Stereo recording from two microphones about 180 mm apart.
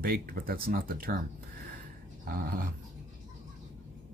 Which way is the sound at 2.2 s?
50° right (ahead or behind).